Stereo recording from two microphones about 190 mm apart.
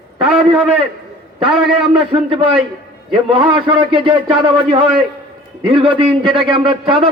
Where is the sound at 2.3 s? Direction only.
25° right (ahead or behind).